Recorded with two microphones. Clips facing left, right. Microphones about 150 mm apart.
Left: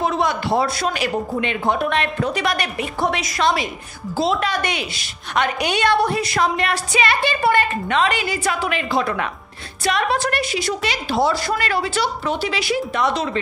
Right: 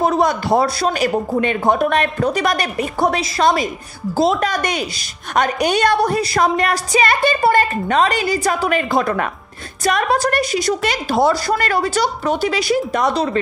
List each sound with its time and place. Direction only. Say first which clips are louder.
0.0 s a woman's voice: right 4 dB; 40° right (ahead or behind)